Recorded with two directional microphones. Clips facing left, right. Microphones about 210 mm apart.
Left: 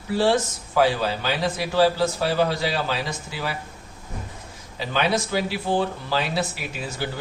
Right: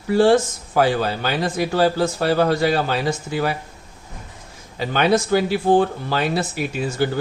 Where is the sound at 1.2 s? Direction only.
50° right (ahead or behind).